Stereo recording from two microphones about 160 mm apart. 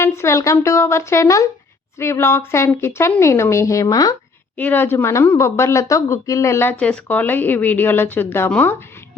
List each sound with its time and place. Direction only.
0.0 s a woman's voice: 15° left (ahead or behind)
4.5 s a woman's voice: 10° left (ahead or behind)